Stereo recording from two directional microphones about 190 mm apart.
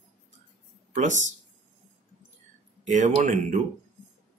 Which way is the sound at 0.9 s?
40° right (ahead or behind).